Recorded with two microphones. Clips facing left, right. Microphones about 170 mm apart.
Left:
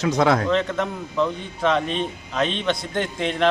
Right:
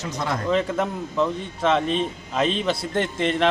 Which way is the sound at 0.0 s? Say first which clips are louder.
Left 9 dB; 80° left.